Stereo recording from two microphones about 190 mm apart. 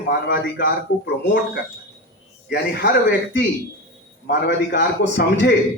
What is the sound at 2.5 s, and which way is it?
Speech, 60° left (ahead or behind).